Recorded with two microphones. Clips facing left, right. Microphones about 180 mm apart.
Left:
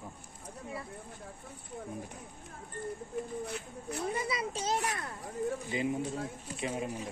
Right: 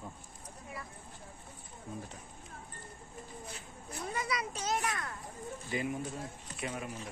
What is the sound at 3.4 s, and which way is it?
Speech, 65° left (ahead or behind).